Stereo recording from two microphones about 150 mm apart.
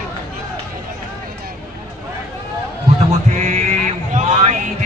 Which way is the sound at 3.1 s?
50° right (ahead or behind).